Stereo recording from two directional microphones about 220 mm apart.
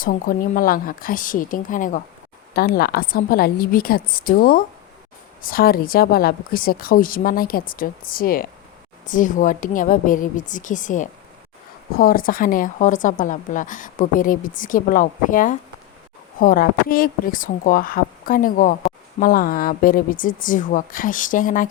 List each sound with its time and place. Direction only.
0.0 s speech: 40° left (ahead or behind)